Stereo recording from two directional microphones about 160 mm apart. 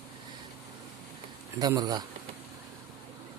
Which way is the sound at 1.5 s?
25° right (ahead or behind).